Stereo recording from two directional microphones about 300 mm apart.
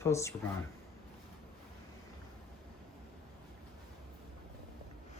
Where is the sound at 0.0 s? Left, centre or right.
Centre.